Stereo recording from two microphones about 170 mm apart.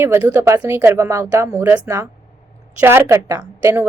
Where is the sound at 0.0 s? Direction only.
15° right (ahead or behind).